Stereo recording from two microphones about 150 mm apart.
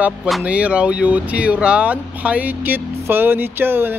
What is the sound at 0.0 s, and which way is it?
Speech, 10° right (ahead or behind).